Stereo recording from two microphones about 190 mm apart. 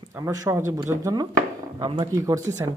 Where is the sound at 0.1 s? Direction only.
20° right (ahead or behind).